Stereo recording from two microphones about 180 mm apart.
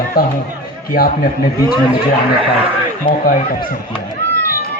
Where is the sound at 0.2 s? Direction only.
55° left (ahead or behind).